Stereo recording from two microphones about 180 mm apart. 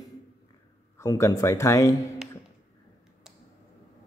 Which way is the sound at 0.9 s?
15° left (ahead or behind).